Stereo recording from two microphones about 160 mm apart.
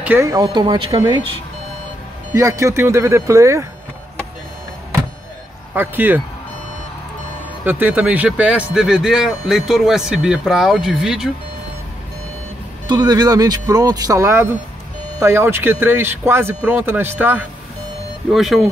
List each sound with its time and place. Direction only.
0.0 s speech: 15° right (ahead or behind)
2.3 s speech: 20° right (ahead or behind)
5.8 s speech: 10° right (ahead or behind)
7.6 s a man's voice: 10° right (ahead or behind)
12.8 s a man's voice: 25° right (ahead or behind); by 18.7 s centre (ahead or behind)